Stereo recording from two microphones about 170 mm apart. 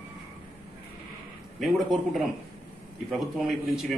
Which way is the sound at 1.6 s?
Centre (ahead or behind).